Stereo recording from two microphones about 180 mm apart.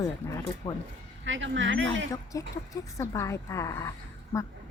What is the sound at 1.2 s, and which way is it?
Speech, 90° right.